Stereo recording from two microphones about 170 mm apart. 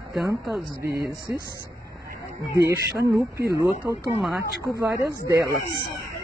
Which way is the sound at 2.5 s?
15° right (ahead or behind).